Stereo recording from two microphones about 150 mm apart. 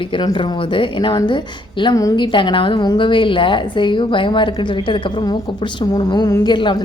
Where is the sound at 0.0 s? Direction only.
30° left (ahead or behind).